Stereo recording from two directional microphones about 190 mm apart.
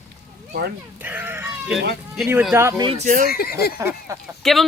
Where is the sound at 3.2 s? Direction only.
55° left (ahead or behind).